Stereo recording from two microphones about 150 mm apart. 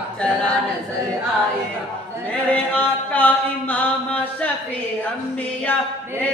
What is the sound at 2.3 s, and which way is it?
Mantra, 10° left (ahead or behind).